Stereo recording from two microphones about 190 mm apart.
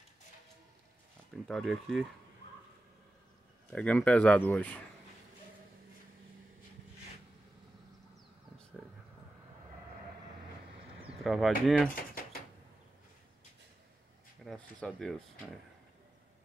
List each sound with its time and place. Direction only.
1.3 s speech: centre (ahead or behind)
3.7 s speech: 5° left (ahead or behind)
11.2 s speech: centre (ahead or behind)
14.4 s speech: centre (ahead or behind)